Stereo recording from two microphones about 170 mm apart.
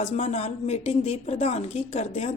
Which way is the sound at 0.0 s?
40° left (ahead or behind).